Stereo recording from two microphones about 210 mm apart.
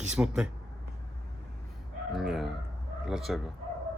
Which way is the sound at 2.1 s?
Centre (ahead or behind).